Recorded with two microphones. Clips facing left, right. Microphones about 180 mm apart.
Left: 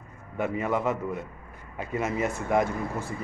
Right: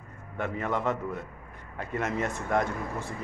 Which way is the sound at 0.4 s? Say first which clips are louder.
Left 3 dB; 5° left (ahead or behind).